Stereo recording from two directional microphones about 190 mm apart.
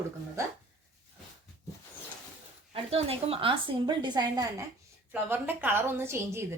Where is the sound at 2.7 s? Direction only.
30° right (ahead or behind).